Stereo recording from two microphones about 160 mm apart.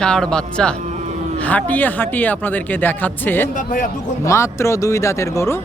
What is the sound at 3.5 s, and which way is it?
Speech, 55° left (ahead or behind).